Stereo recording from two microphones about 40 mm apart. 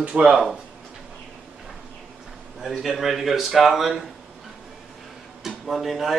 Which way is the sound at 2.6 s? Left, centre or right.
Centre.